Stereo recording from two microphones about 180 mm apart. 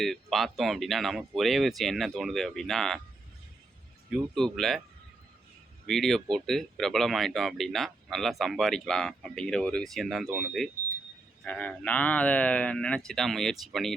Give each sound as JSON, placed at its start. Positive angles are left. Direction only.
{"t": 0.0, "sound": "speech", "side_deg": 0}
{"t": 4.1, "sound": "speech", "side_deg": 0}
{"t": 5.8, "sound": "speech", "side_deg": 0}